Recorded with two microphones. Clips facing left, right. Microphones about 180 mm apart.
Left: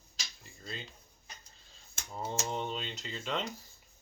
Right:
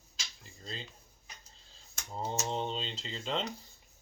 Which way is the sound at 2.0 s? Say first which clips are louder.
Right 1 dB; 25° right (ahead or behind).